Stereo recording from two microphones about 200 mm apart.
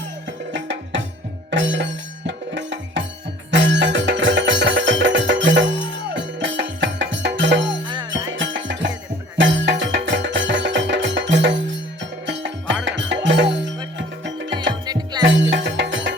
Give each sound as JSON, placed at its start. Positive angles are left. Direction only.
{"t": 0.5, "sound": "music", "side_deg": -65}
{"t": 14.7, "sound": "music", "side_deg": -20}
{"t": 15.2, "sound": "music", "side_deg": -65}